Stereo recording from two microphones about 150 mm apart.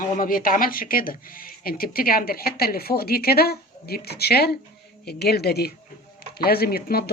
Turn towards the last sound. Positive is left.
turn(degrees=90)